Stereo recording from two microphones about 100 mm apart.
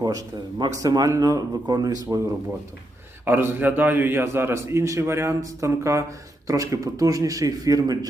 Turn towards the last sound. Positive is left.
turn(degrees=-40)  # may be behind; listen again after turning